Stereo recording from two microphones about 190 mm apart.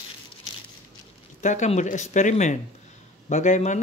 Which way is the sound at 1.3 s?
40° left (ahead or behind).